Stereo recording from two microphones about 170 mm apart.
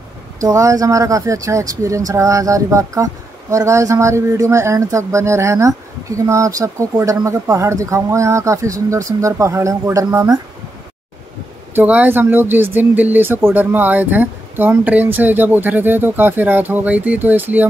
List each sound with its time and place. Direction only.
0.4 s speech: 20° right (ahead or behind)
11.7 s speech: 10° right (ahead or behind)